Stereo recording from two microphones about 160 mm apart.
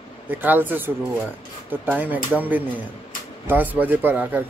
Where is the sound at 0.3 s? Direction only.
10° right (ahead or behind).